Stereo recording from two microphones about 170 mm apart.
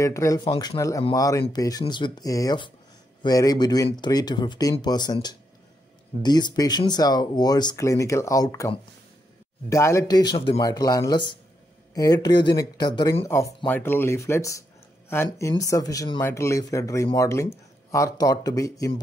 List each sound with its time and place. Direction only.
0.0 s speech: 20° left (ahead or behind)